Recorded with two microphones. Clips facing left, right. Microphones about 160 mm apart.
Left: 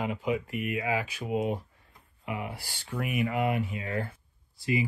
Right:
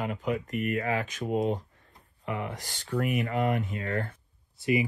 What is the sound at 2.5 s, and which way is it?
Speech, 45° right (ahead or behind).